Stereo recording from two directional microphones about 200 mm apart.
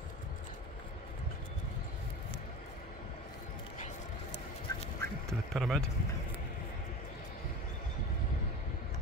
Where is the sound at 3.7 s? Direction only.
35° left (ahead or behind).